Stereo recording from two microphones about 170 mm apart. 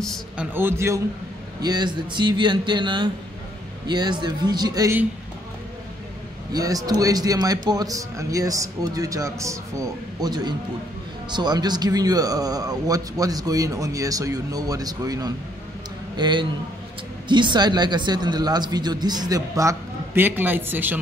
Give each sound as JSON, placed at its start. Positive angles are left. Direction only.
{"t": 0.0, "sound": "a man's voice", "side_deg": 0}
{"t": 0.6, "sound": "a man's voice", "side_deg": -15}
{"t": 6.5, "sound": "speech", "side_deg": -20}